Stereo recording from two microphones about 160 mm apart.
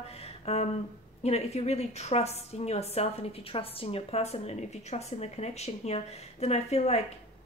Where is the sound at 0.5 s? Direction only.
40° left (ahead or behind).